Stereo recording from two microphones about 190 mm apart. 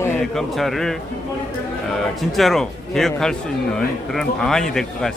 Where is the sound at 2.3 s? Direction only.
Centre (ahead or behind).